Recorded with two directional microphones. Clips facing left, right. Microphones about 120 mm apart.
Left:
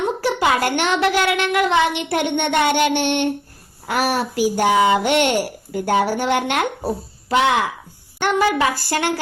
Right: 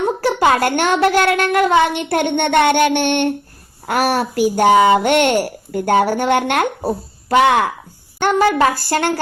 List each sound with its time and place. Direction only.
0.2 s a woman's voice: 45° right (ahead or behind)
8.2 s a woman's voice: 45° right (ahead or behind)